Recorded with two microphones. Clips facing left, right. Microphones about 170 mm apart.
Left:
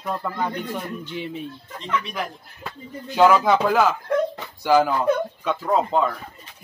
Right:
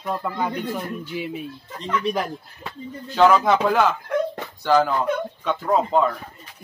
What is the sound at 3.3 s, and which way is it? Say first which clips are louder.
A man's voice: even; centre (ahead or behind).